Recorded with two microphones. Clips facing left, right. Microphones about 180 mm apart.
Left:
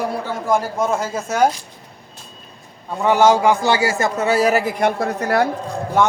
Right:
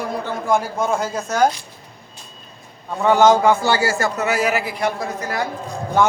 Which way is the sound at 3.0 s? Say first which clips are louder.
Even; 10° left (ahead or behind).